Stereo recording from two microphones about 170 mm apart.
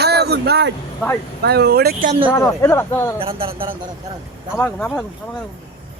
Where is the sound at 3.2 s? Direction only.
30° right (ahead or behind).